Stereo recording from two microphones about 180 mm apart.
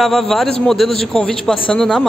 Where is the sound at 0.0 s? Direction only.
Centre (ahead or behind).